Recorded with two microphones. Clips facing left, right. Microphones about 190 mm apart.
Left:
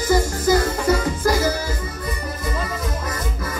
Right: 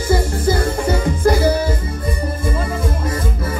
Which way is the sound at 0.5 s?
30° right (ahead or behind).